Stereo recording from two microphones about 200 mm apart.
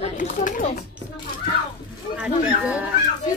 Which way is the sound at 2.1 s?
5° right (ahead or behind).